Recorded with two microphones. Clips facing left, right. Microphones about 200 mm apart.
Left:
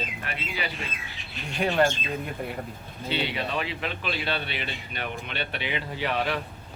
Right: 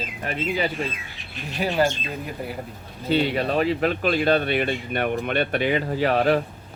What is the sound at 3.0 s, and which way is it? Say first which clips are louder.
Speech: right 8 dB; 45° right (ahead or behind).